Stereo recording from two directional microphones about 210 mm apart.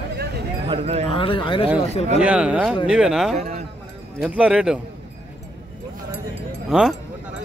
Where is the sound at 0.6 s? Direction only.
25° right (ahead or behind).